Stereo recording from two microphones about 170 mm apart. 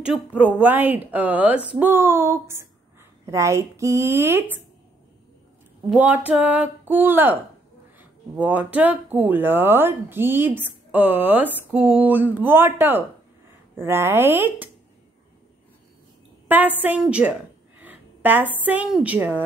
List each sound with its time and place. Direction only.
0.0 s speech: 5° right (ahead or behind)
5.9 s speech: 10° right (ahead or behind)
16.4 s a woman's voice: 10° right (ahead or behind)